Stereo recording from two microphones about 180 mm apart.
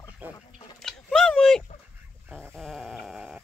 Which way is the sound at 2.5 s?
Centre (ahead or behind).